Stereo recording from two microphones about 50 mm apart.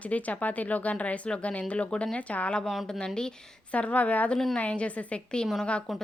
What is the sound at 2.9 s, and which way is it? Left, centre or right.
Speech, centre.